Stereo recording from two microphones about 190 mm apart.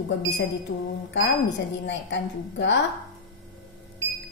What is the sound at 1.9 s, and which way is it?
Speech, 70° left (ahead or behind).